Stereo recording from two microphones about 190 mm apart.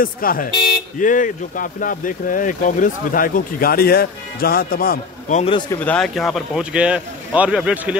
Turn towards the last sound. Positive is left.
turn(degrees=-5)  # may be behind; listen again after turning